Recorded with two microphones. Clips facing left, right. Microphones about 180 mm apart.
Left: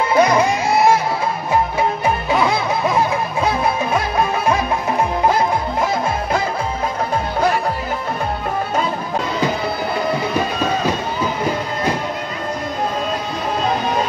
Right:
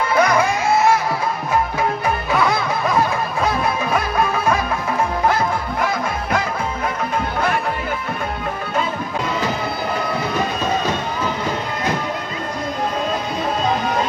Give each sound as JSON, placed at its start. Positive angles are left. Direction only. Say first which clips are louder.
{"t": 0.1, "sound": "music", "louder": "left 2 dB", "side_deg": 25}
{"t": 2.3, "sound": "music", "louder": "even", "side_deg": 20}